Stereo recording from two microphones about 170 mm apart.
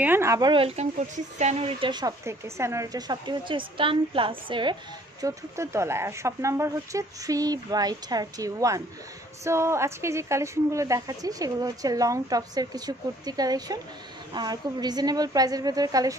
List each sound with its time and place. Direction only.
0.0 s speech: 15° right (ahead or behind); by 4.7 s 30° right (ahead or behind)
5.2 s speech: 15° right (ahead or behind)